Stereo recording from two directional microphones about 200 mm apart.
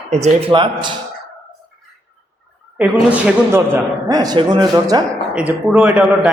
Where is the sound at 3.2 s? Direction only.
10° right (ahead or behind).